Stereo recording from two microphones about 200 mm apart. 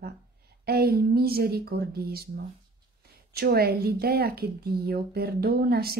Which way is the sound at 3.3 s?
50° right (ahead or behind).